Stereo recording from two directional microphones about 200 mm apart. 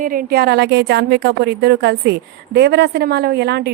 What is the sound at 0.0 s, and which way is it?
A woman's voice, 45° right (ahead or behind).